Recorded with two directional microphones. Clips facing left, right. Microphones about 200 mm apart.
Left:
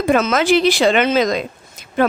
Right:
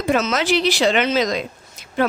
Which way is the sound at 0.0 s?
55° left (ahead or behind).